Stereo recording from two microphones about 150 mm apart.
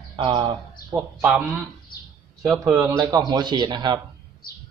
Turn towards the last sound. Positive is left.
turn(degrees=-30)  # may be behind; listen again after turning